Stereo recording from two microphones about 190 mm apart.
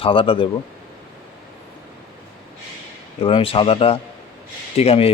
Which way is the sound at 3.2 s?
25° left (ahead or behind).